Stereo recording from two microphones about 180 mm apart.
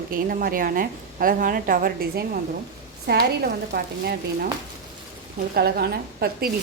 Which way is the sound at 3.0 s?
65° right (ahead or behind).